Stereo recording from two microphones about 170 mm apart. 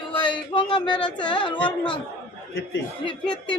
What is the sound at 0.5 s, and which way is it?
Speech, 30° left (ahead or behind).